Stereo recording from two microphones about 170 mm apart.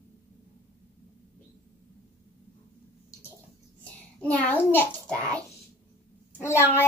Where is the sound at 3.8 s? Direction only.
10° left (ahead or behind).